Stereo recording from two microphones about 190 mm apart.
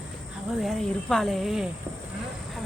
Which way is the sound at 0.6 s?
Centre (ahead or behind).